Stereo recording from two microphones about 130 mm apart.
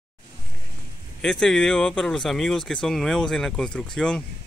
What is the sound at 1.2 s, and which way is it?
Speech, 5° left (ahead or behind).